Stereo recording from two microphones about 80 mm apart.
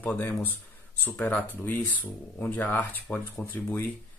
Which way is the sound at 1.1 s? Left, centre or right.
Left.